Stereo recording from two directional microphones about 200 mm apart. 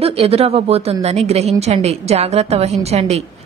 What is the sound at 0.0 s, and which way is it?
A woman's voice, 30° right (ahead or behind).